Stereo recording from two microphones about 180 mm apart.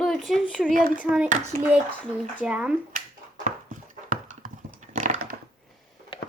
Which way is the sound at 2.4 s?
5° right (ahead or behind).